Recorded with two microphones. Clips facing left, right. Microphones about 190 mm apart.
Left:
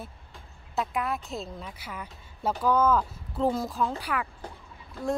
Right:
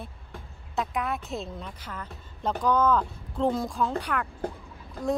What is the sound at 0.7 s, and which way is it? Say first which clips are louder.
A woman's voice: even; centre (ahead or behind).